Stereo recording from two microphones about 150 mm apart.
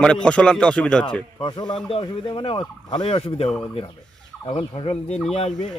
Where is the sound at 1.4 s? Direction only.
35° left (ahead or behind).